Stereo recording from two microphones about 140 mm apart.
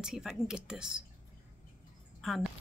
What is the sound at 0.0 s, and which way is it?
Speech, 5° right (ahead or behind).